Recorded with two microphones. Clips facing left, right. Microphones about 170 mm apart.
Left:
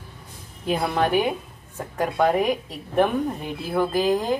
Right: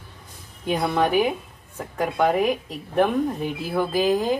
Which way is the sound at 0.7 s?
Centre (ahead or behind).